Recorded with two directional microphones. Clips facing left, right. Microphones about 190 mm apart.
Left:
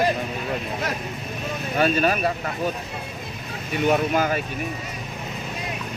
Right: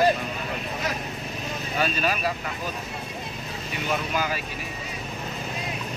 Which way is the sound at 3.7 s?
55° left (ahead or behind).